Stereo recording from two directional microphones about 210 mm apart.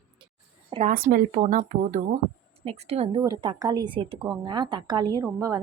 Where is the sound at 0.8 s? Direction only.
40° right (ahead or behind).